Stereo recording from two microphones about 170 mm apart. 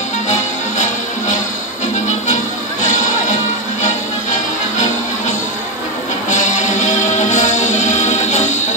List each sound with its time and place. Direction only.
2.8 s music: 45° left (ahead or behind)
6.3 s music: 45° left (ahead or behind)